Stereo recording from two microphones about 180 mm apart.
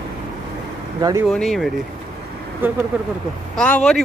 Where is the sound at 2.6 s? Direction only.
10° right (ahead or behind).